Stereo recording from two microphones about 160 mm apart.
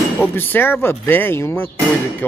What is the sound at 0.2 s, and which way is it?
Speech, 15° left (ahead or behind).